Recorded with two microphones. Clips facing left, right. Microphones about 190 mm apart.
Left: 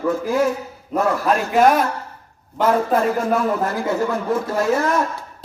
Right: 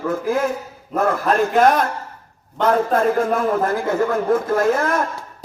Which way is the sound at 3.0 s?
50° right (ahead or behind).